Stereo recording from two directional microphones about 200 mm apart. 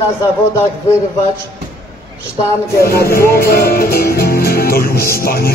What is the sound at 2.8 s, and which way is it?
Music, 45° left (ahead or behind).